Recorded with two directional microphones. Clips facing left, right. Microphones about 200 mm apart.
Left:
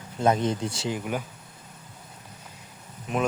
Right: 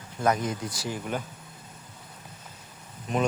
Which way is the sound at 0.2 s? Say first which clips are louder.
Left 3 dB; 25° left (ahead or behind).